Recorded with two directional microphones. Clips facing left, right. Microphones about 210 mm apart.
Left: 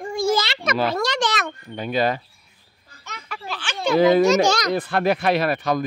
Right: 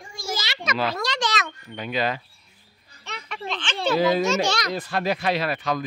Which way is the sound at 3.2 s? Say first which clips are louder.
Right 1 dB; 5° left (ahead or behind).